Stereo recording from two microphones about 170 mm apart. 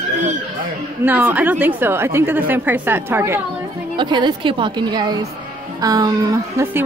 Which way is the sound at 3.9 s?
25° right (ahead or behind).